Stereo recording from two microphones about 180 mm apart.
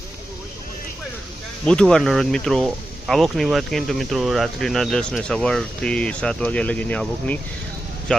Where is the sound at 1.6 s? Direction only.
5° left (ahead or behind).